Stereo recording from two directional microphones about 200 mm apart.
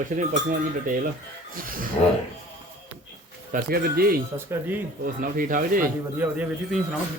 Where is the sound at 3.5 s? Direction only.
50° right (ahead or behind).